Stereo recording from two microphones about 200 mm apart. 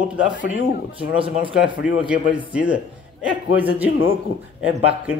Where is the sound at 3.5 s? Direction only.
10° right (ahead or behind).